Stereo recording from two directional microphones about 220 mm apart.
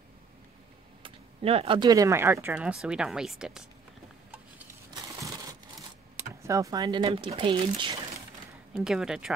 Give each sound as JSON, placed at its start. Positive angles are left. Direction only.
{"t": 1.0, "sound": "speech", "side_deg": -25}
{"t": 4.3, "sound": "a sound", "side_deg": -10}
{"t": 8.7, "sound": "speech", "side_deg": 0}